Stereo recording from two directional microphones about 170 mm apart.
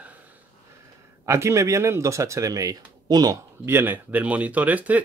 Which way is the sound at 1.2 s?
15° right (ahead or behind).